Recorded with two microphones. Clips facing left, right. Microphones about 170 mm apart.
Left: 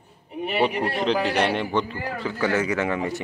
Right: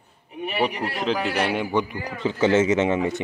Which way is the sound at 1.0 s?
Centre (ahead or behind).